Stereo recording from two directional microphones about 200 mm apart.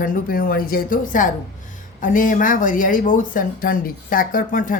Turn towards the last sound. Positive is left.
turn(degrees=40)  # may be behind; listen again after turning